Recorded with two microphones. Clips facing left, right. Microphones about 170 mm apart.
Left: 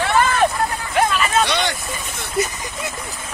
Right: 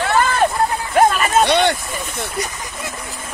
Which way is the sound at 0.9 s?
40° right (ahead or behind).